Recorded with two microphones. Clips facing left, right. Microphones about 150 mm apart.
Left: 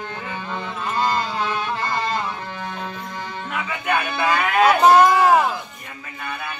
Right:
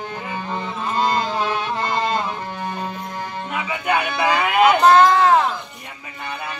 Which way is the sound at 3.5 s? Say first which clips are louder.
Right 2 dB; 15° right (ahead or behind).